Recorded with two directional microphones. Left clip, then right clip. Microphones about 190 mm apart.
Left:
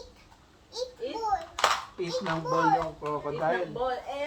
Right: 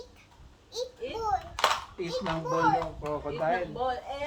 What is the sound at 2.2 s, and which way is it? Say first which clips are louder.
A child's voice: left 1 dB; 5° left (ahead or behind).